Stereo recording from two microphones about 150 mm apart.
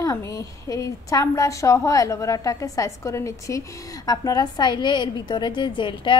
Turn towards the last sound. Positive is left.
turn(degrees=30)  # may be behind; listen again after turning